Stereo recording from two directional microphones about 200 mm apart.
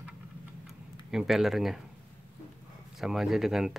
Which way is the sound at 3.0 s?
Centre (ahead or behind).